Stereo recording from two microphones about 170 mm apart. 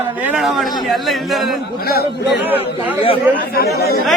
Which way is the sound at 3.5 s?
65° left (ahead or behind).